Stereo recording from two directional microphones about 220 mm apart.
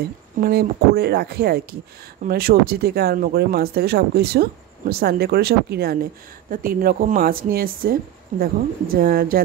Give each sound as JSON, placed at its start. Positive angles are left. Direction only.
{"t": 0.4, "sound": "speech", "side_deg": -45}